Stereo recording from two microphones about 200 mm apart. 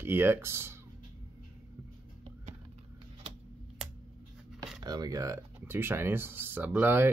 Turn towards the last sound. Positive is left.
turn(degrees=-10)  # may be behind; listen again after turning